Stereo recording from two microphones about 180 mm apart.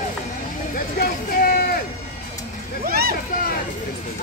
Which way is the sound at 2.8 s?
55° right (ahead or behind).